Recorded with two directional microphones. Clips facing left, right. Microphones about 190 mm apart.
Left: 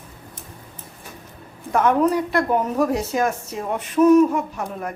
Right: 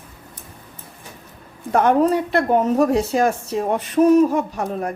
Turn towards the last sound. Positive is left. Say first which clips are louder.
# right 4 dB
turn(degrees=-35)  # may be behind; listen again after turning